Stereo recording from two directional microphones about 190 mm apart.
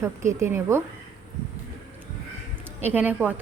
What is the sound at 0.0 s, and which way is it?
Speech, 15° right (ahead or behind).